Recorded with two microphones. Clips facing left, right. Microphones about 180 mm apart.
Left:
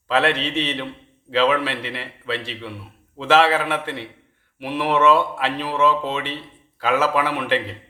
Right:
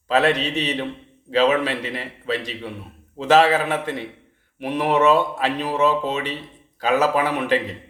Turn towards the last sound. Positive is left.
turn(degrees=-40)  # may be behind; listen again after turning